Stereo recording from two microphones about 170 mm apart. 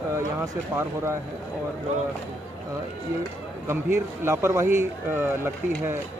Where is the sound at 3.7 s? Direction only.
15° right (ahead or behind).